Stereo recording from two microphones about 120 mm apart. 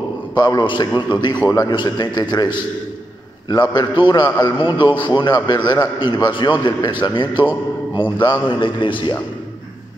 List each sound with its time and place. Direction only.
0.4 s a man's voice: 35° left (ahead or behind)